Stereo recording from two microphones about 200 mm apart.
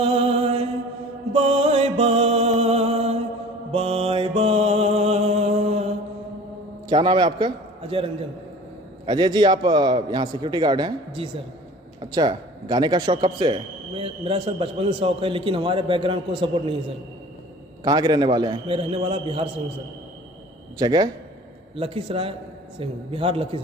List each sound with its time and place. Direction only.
0.0 s mantra: 30° right (ahead or behind)
1.3 s music: 30° right (ahead or behind)
3.7 s mantra: 30° right (ahead or behind)
6.9 s a man's voice: 25° right (ahead or behind)
17.8 s a man's voice: 20° right (ahead or behind)
20.7 s a man's voice: 20° right (ahead or behind)